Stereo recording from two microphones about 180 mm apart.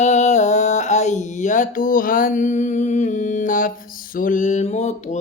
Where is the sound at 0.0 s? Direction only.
40° left (ahead or behind).